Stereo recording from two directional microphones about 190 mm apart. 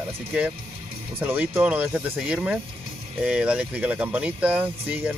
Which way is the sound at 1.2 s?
10° right (ahead or behind).